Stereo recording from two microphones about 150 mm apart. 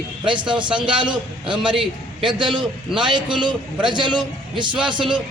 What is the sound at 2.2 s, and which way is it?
A man's voice, 30° right (ahead or behind).